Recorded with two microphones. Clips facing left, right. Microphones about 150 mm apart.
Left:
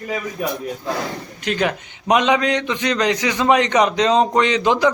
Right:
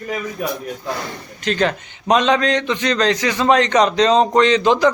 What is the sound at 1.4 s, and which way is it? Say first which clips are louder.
A man's voice: right 2 dB; 10° left (ahead or behind).